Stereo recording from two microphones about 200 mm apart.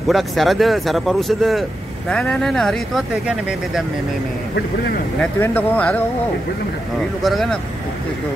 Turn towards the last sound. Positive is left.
turn(degrees=0)  # may be behind; listen again after turning